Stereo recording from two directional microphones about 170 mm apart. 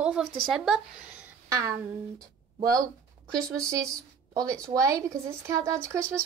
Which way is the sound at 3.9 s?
20° right (ahead or behind).